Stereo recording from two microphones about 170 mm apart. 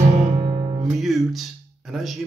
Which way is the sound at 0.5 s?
30° right (ahead or behind).